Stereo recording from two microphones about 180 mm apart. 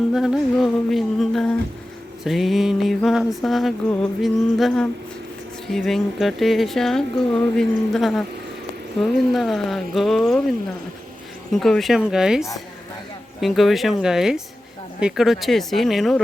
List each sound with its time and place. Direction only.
0.1 s mantra: 5° right (ahead or behind)
11.5 s mantra: centre (ahead or behind)